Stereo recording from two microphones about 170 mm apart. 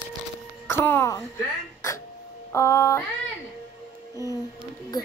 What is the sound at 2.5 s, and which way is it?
Speech, 15° left (ahead or behind).